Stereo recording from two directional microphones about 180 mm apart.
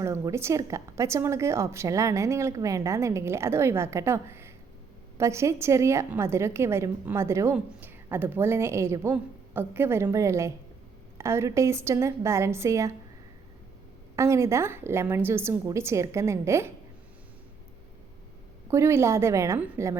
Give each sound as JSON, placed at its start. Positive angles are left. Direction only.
{"t": 0.0, "sound": "a woman's voice", "side_deg": -15}
{"t": 14.2, "sound": "a woman's voice", "side_deg": -15}
{"t": 18.7, "sound": "a woman's voice", "side_deg": -15}